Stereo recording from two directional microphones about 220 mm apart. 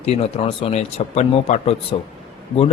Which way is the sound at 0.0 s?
25° left (ahead or behind).